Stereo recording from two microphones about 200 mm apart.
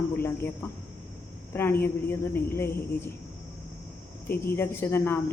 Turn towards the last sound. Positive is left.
turn(degrees=10)  # may be behind; listen again after turning